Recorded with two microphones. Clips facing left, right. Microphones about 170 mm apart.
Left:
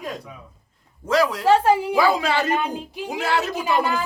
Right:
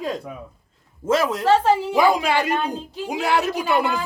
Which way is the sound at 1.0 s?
25° right (ahead or behind).